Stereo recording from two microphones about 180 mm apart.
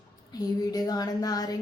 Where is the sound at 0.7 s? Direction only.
20° left (ahead or behind).